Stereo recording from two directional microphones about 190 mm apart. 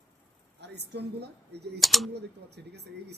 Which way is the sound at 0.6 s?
60° right (ahead or behind).